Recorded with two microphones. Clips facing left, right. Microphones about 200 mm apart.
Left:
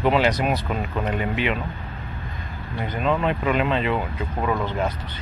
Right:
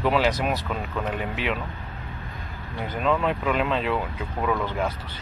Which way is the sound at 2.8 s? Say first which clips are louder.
Left 1 dB; centre (ahead or behind).